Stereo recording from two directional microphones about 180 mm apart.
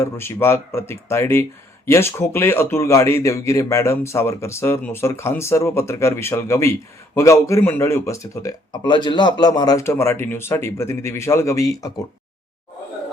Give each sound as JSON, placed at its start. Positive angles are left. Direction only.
{"t": 0.0, "sound": "a man's voice", "side_deg": 15}